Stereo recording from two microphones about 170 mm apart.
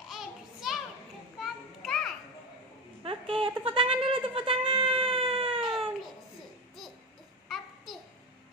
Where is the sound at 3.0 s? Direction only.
30° right (ahead or behind).